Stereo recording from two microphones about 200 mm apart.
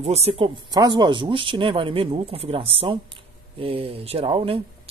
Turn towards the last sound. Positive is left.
turn(degrees=-30)  # may be behind; listen again after turning